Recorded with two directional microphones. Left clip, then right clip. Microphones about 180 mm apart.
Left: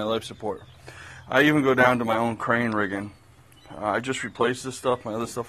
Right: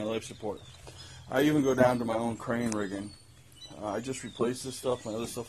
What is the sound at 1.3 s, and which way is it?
Speech, 15° left (ahead or behind).